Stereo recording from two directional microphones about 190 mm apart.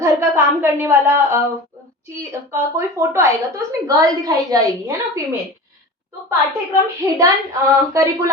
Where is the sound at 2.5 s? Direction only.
15° right (ahead or behind).